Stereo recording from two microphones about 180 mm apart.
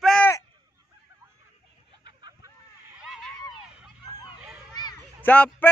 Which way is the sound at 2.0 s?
25° right (ahead or behind).